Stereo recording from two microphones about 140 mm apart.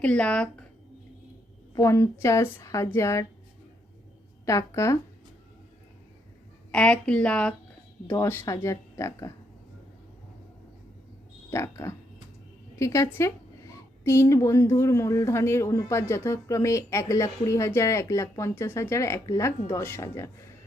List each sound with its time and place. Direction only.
0.0 s a woman's voice: 10° left (ahead or behind)
1.7 s speech: 20° left (ahead or behind)
4.4 s speech: 20° left (ahead or behind)
6.7 s a woman's voice: 5° left (ahead or behind)
8.1 s speech: 20° left (ahead or behind)
11.5 s a woman's voice: 20° left (ahead or behind)